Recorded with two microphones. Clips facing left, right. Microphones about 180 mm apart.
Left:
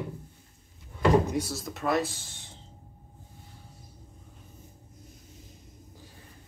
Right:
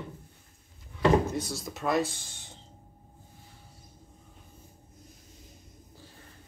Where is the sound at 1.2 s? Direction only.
10° left (ahead or behind).